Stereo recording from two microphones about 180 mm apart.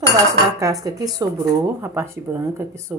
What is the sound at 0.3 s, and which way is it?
Speech, 20° right (ahead or behind).